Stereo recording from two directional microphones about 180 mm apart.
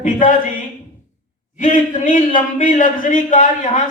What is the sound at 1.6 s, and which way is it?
A man's voice, 45° left (ahead or behind).